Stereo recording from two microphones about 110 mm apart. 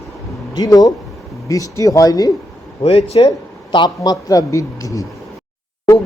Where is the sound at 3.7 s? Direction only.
40° left (ahead or behind).